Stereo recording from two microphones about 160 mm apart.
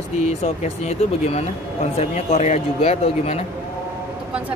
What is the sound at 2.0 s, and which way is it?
Speech, 40° left (ahead or behind).